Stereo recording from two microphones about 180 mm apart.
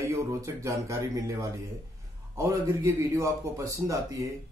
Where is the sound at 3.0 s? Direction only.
15° right (ahead or behind).